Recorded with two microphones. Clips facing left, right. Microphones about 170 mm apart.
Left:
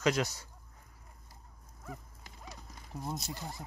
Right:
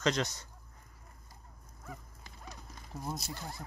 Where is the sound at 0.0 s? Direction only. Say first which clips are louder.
Left 1 dB; 5° left (ahead or behind).